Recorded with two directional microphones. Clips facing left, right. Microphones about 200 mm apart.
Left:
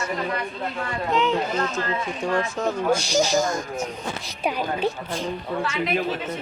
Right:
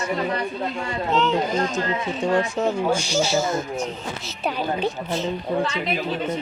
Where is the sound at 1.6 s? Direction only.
25° right (ahead or behind); by 3.6 s 5° right (ahead or behind).